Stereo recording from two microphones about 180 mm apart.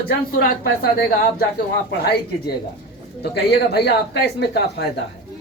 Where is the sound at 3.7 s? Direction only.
65° left (ahead or behind).